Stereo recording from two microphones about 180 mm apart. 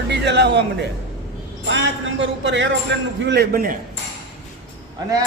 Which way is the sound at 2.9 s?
75° right (ahead or behind).